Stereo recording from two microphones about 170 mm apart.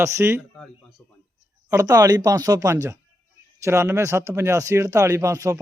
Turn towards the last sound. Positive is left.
turn(degrees=-20)  # may be behind; listen again after turning